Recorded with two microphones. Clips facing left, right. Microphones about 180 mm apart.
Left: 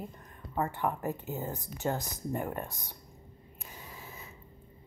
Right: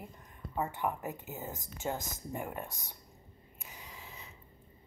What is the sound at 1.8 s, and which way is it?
Speech, 55° left (ahead or behind).